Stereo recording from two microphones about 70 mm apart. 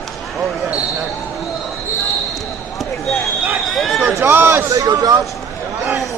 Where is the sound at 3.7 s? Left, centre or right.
Centre.